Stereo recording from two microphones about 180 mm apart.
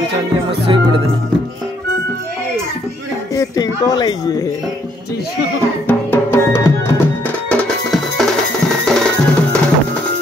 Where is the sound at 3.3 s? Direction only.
20° left (ahead or behind).